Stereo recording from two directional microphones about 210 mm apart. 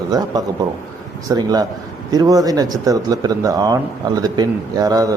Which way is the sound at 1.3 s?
20° right (ahead or behind).